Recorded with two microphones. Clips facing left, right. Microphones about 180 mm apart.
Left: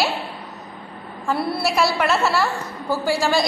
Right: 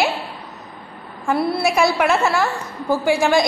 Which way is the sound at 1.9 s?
10° right (ahead or behind).